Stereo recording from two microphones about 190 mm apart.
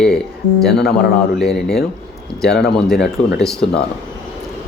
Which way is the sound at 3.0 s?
65° left (ahead or behind).